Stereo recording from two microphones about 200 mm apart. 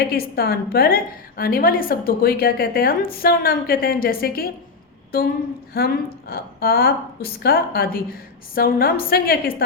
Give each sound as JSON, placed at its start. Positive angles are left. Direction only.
{"t": 0.0, "sound": "a woman's voice", "side_deg": 50}